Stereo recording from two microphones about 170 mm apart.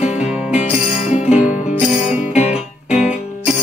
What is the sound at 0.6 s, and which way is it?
Music, 40° left (ahead or behind).